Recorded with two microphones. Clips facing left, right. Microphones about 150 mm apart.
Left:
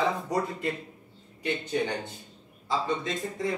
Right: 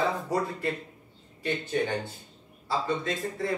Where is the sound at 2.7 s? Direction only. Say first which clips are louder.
Even; 20° left (ahead or behind).